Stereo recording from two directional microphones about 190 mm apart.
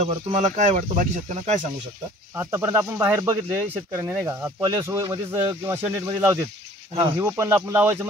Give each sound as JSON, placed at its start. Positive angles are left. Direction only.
{"t": 0.0, "sound": "speech", "side_deg": -35}
{"t": 2.3, "sound": "speech", "side_deg": -15}